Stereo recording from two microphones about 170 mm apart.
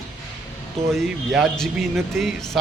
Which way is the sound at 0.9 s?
Centre (ahead or behind).